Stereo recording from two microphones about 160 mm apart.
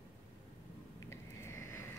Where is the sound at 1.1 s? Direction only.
15° left (ahead or behind).